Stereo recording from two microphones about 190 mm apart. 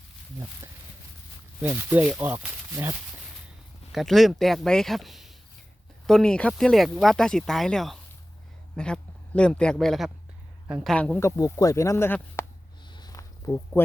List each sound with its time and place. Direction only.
1.6 s speech: 10° right (ahead or behind)
3.9 s speech: centre (ahead or behind)
10.9 s speech: 5° left (ahead or behind)
12.9 s a sound: 20° left (ahead or behind)